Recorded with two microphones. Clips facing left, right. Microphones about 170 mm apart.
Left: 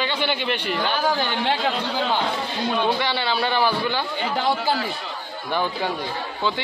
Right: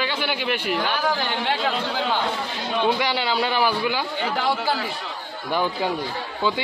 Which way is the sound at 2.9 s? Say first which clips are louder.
Right 1 dB; 15° right (ahead or behind).